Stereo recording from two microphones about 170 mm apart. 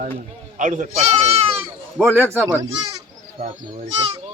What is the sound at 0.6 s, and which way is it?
Speech, 50° right (ahead or behind).